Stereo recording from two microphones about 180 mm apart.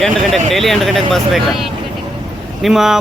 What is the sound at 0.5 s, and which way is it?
Speech, centre (ahead or behind).